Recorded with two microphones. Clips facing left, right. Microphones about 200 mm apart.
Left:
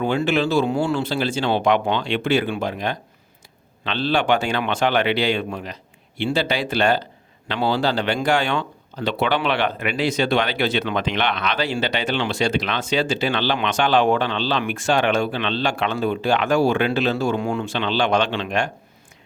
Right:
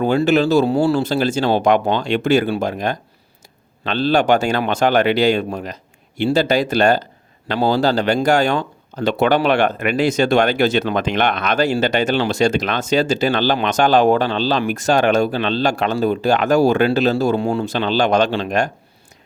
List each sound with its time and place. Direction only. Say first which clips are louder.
0.0 s speech: right 5 dB; 40° right (ahead or behind)